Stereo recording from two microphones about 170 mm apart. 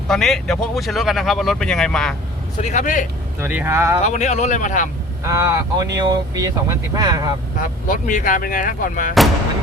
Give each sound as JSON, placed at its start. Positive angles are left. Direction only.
{"t": 0.1, "sound": "speech", "side_deg": 0}
{"t": 2.6, "sound": "speech", "side_deg": 40}
{"t": 3.4, "sound": "speech", "side_deg": -10}
{"t": 4.0, "sound": "speech", "side_deg": 45}
{"t": 5.2, "sound": "speech", "side_deg": -15}
{"t": 7.6, "sound": "speech", "side_deg": 50}